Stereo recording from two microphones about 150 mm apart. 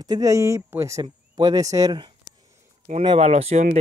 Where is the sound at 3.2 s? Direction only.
45° right (ahead or behind).